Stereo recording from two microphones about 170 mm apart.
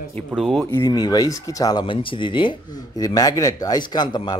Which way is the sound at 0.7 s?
25° left (ahead or behind).